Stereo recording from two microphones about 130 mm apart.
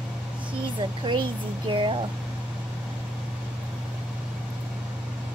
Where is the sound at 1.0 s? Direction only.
40° right (ahead or behind).